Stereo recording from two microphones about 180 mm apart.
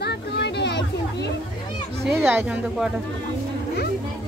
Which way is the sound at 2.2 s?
10° right (ahead or behind).